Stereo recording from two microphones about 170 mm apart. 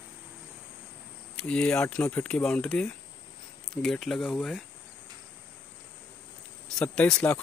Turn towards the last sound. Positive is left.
turn(degrees=5)  # may be behind; listen again after turning